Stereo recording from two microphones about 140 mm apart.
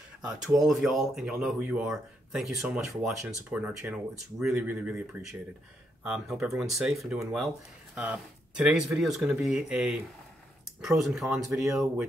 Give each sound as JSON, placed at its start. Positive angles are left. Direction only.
{"t": 0.2, "sound": "speech", "side_deg": -5}
{"t": 2.3, "sound": "speech", "side_deg": 0}
{"t": 11.5, "sound": "speech", "side_deg": -20}